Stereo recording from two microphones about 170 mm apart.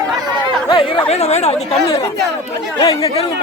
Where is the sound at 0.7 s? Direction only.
30° left (ahead or behind).